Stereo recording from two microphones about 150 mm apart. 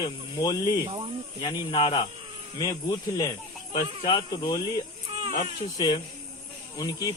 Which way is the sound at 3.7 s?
30° left (ahead or behind).